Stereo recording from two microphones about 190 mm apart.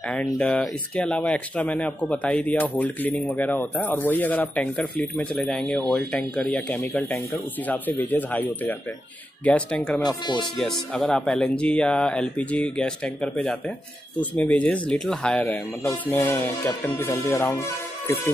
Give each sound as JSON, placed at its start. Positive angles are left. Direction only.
{"t": 0.1, "sound": "speech", "side_deg": 5}
{"t": 10.0, "sound": "speech", "side_deg": 20}
{"t": 10.6, "sound": "speech", "side_deg": 5}